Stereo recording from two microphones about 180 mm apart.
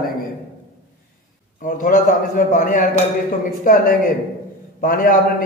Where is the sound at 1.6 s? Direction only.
45° left (ahead or behind).